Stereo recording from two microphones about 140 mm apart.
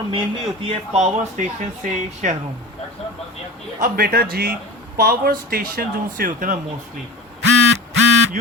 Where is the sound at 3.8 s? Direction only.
90° right.